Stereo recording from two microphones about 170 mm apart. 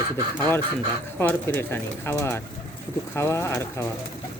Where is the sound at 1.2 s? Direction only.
10° left (ahead or behind).